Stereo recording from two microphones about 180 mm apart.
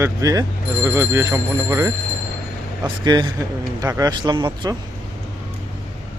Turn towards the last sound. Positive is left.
turn(degrees=-25)  # may be behind; listen again after turning